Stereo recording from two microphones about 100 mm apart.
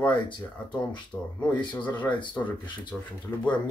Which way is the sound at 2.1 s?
50° left (ahead or behind).